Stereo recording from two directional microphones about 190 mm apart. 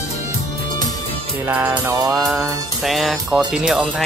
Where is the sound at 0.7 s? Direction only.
20° left (ahead or behind).